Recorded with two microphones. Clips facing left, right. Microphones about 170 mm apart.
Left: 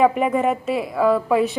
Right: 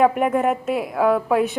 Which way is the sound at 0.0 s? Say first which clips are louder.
Even; centre (ahead or behind).